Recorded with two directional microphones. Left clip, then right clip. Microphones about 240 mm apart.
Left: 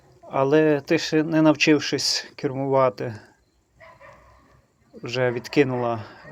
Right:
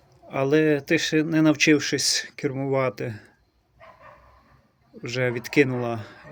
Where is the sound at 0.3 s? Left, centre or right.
Centre.